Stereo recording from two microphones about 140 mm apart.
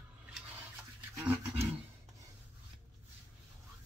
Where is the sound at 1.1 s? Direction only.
15° right (ahead or behind).